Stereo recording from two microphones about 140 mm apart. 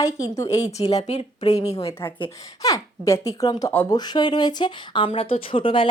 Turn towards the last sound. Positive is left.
turn(degrees=40)  # may be behind; listen again after turning